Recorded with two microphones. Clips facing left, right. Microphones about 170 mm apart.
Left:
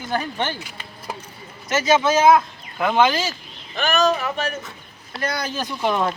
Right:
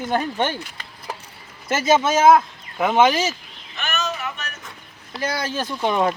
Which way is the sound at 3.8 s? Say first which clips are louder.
Left 8 dB; 35° left (ahead or behind).